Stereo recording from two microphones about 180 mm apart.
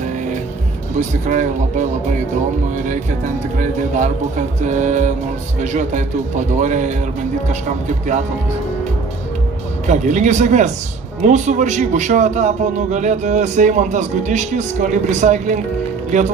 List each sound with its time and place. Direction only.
0.9 s speech: 40° right (ahead or behind)
3.5 s speech: 45° right (ahead or behind)
9.8 s a man's voice: 40° right (ahead or behind)